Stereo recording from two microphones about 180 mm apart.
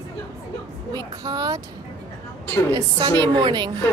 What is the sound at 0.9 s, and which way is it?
Speech, 20° right (ahead or behind).